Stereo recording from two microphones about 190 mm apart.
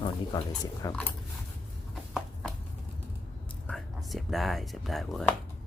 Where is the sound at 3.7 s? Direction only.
Centre (ahead or behind).